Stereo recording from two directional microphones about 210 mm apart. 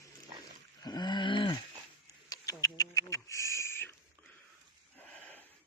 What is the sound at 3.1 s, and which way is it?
Owl, 15° left (ahead or behind).